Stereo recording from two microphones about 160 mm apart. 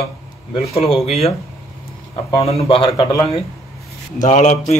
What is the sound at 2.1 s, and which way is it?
Speech, 40° left (ahead or behind).